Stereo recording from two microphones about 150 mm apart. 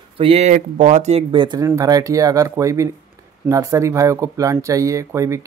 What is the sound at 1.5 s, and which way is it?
Speech, 20° right (ahead or behind).